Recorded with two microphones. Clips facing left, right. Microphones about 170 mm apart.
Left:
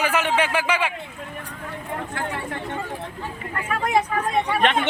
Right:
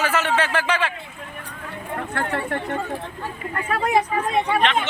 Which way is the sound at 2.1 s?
60° right (ahead or behind).